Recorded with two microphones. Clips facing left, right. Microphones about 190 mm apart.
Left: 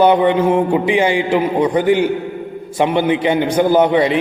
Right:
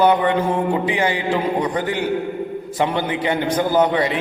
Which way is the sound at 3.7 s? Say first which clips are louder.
Left 4 dB; 25° left (ahead or behind).